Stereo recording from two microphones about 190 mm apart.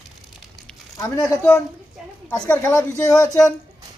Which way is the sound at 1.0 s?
20° left (ahead or behind).